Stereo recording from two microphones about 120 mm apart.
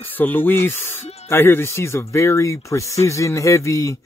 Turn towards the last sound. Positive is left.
turn(degrees=25)  # may be behind; listen again after turning